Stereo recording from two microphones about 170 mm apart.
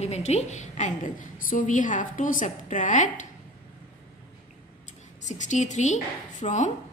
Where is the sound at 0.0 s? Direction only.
40° left (ahead or behind).